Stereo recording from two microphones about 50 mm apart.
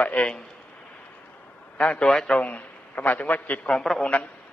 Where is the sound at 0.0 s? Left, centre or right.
Left.